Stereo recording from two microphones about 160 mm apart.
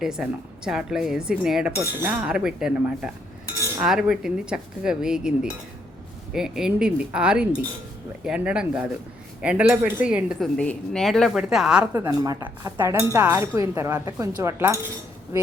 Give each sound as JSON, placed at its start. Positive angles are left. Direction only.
{"t": 0.0, "sound": "speech", "side_deg": -5}
{"t": 10.6, "sound": "speech", "side_deg": 5}
{"t": 12.0, "sound": "a woman's voice", "side_deg": -20}